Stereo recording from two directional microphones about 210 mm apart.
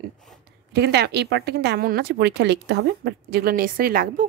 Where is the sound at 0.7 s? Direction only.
50° right (ahead or behind).